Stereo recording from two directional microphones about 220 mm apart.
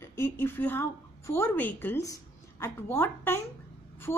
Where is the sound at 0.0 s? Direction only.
10° left (ahead or behind).